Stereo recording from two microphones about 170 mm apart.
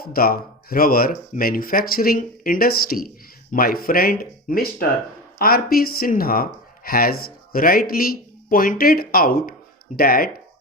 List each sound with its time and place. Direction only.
0.0 s speech: 60° left (ahead or behind)